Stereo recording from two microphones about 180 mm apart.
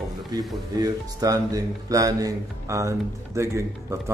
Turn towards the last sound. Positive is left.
turn(degrees=-15)  # may be behind; listen again after turning